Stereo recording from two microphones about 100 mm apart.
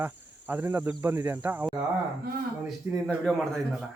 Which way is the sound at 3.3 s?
10° left (ahead or behind).